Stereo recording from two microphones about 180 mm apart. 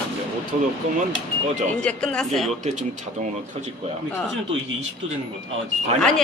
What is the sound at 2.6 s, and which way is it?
Speech, 40° right (ahead or behind).